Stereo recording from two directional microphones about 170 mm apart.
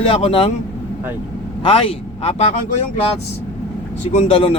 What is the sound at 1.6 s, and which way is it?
Speech, 30° left (ahead or behind).